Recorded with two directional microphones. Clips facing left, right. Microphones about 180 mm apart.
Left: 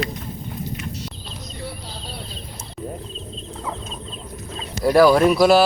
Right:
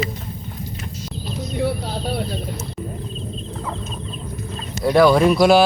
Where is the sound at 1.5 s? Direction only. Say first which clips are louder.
Right 13 dB; 65° right (ahead or behind).